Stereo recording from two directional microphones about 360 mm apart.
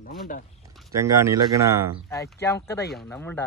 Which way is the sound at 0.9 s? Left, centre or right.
Centre.